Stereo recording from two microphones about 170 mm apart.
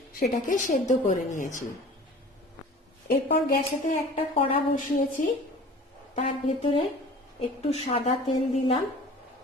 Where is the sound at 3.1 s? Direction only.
70° left (ahead or behind).